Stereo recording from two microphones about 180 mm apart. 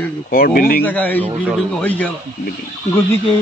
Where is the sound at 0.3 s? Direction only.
55° left (ahead or behind).